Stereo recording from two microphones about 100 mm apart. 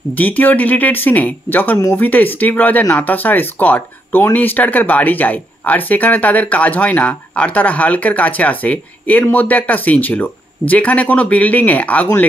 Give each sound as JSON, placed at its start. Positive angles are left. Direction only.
{"t": 0.2, "sound": "speech", "side_deg": 15}